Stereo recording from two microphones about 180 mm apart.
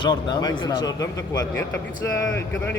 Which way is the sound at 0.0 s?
25° left (ahead or behind).